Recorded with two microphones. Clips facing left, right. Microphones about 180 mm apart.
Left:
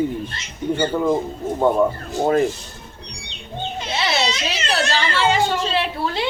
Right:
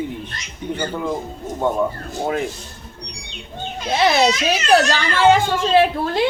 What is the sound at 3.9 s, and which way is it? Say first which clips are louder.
Speech: right 7 dB; 50° right (ahead or behind).